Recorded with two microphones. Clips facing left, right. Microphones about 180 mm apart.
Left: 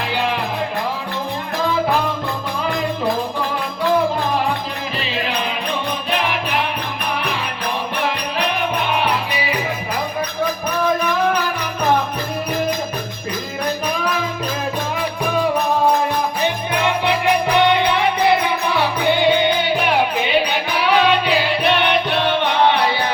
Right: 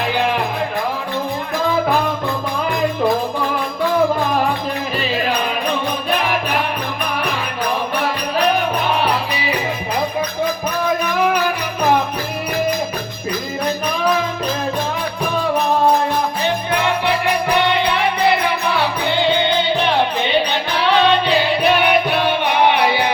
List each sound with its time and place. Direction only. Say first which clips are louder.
16.8 s music: left 3 dB; 20° left (ahead or behind); by 23.1 s 15° right (ahead or behind)